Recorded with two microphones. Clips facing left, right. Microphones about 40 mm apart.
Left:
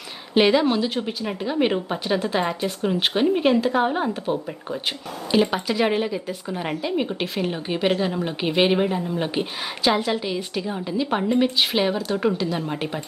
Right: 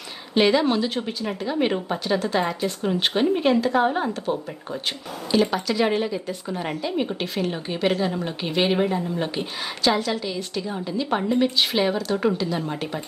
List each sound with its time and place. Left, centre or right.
0.3 s a woman's voice: centre